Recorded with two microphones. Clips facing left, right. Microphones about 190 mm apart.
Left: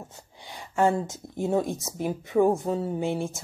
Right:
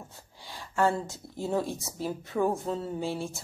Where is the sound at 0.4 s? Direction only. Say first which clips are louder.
Left 3 dB; 20° left (ahead or behind).